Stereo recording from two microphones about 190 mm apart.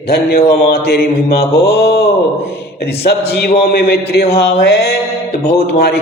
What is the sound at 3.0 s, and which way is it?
A man's voice, 55° left (ahead or behind).